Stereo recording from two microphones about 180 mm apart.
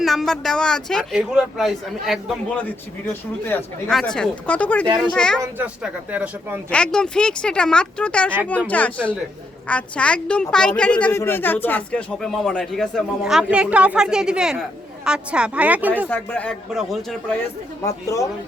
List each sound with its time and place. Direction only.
0.0 s speech: centre (ahead or behind)
3.1 s a man's voice: 10° left (ahead or behind)
5.4 s speech: 10° right (ahead or behind)
6.7 s a man's voice: 5° left (ahead or behind)
16.0 s a man's voice: 10° left (ahead or behind)
17.8 s a man's voice: 20° left (ahead or behind)